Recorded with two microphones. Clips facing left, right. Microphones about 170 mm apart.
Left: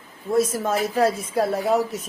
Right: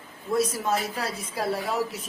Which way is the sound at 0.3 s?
50° left (ahead or behind).